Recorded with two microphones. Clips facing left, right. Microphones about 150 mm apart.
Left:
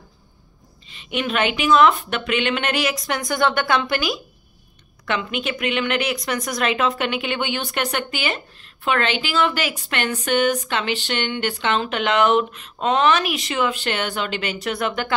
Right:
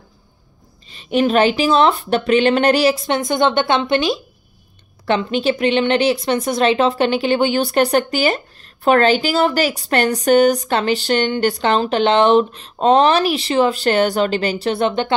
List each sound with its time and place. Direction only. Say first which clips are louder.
0.8 s speech: right 9 dB; 35° right (ahead or behind)